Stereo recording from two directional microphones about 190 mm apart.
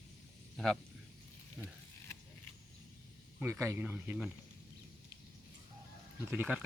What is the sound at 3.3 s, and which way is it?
Speech, 10° right (ahead or behind).